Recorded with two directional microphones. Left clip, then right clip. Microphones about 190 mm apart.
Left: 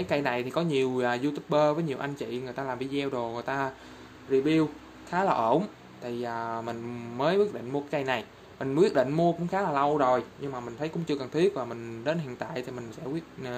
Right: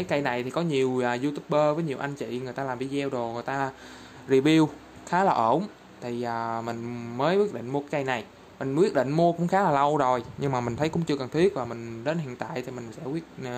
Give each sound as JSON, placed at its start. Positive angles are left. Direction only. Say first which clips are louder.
{"t": 0.0, "sound": "speech", "louder": "right 1 dB", "side_deg": -10}
{"t": 4.3, "sound": "speech", "louder": "right 4 dB", "side_deg": -35}
{"t": 5.1, "sound": "speech", "louder": "right 3 dB", "side_deg": -20}
{"t": 11.1, "sound": "speech", "louder": "even", "side_deg": -15}